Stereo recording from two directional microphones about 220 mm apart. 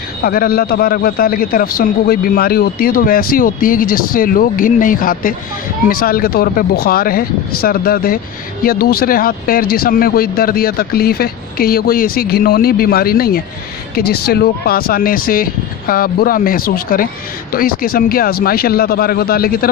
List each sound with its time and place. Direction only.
0.2 s a man's voice: 45° left (ahead or behind)